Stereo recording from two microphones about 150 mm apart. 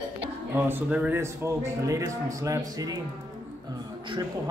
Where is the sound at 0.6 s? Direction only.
10° right (ahead or behind).